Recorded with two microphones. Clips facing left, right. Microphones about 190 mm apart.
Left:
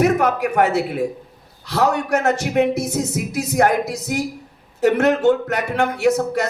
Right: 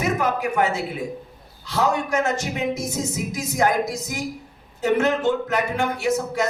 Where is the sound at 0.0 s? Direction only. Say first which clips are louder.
Left 6 dB; 65° left (ahead or behind).